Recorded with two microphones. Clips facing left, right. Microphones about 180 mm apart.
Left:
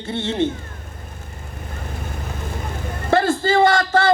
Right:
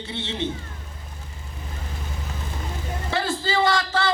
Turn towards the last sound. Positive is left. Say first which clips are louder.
# left 6 dB
turn(degrees=50)  # may be behind; listen again after turning